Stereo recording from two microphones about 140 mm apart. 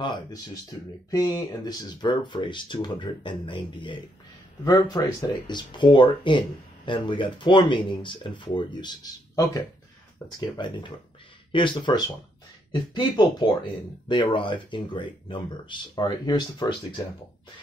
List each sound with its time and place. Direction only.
0.0 s speech: 35° left (ahead or behind)